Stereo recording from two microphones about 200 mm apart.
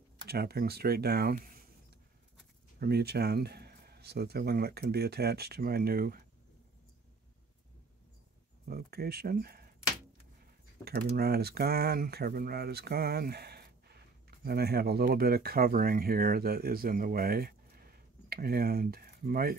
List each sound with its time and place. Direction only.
0.3 s speech: 50° right (ahead or behind)
2.8 s speech: 55° right (ahead or behind)
8.6 s speech: 50° right (ahead or behind)
10.8 s speech: 50° right (ahead or behind)